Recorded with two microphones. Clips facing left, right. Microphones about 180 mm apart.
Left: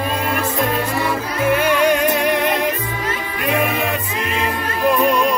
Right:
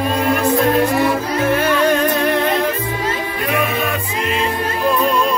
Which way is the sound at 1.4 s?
10° left (ahead or behind).